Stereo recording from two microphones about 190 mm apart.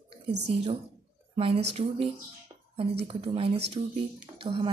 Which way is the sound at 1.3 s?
30° right (ahead or behind).